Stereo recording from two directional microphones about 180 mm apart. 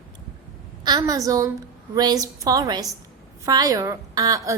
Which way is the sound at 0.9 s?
20° right (ahead or behind).